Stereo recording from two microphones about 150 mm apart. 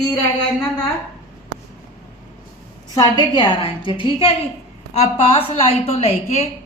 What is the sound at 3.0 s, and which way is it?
A woman's voice, 30° left (ahead or behind).